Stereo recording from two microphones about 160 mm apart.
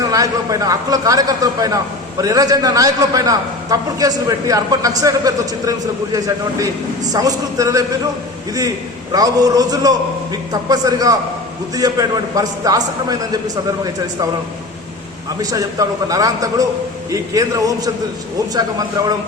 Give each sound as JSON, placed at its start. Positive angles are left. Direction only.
{"t": 0.0, "sound": "a man's voice", "side_deg": -20}
{"t": 9.1, "sound": "a man's voice", "side_deg": -25}
{"t": 15.4, "sound": "a man's voice", "side_deg": -20}